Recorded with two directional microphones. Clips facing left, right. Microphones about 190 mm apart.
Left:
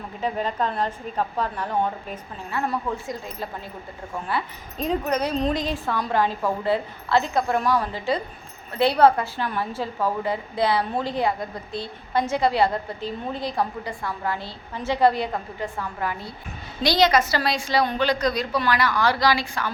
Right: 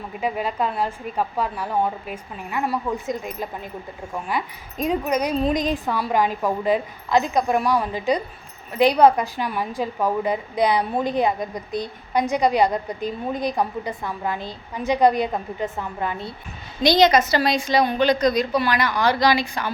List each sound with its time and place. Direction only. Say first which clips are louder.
0.2 s a woman's voice: right 1 dB; 10° right (ahead or behind)